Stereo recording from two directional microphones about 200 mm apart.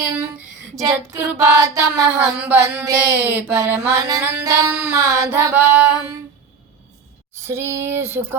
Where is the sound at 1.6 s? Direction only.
15° right (ahead or behind).